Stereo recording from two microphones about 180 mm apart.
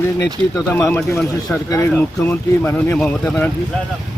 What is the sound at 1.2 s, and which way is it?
Speech, centre (ahead or behind).